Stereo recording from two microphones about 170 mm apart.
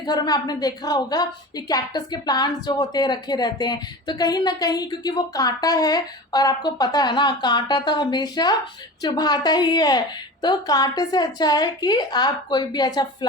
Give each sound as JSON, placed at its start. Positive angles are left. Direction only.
{"t": 0.0, "sound": "a woman's voice", "side_deg": 25}